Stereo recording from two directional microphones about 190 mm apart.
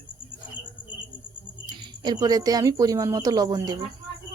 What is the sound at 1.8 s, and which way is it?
Speech, 20° right (ahead or behind).